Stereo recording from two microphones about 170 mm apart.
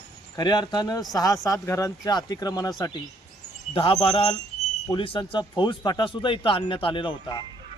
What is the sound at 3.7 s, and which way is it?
Speech, 35° left (ahead or behind).